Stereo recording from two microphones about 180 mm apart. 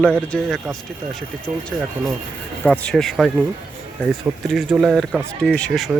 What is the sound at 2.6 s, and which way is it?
Speech, 5° left (ahead or behind).